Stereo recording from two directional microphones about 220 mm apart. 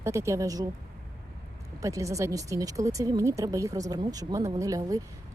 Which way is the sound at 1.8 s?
15° right (ahead or behind).